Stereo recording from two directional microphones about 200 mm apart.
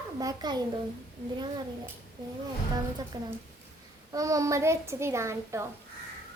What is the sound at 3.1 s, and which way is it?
A child's voice, 20° right (ahead or behind).